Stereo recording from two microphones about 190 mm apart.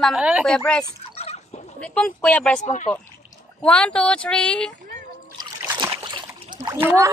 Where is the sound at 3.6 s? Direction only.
5° left (ahead or behind).